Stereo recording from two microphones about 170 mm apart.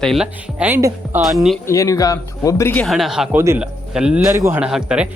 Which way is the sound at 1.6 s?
20° left (ahead or behind).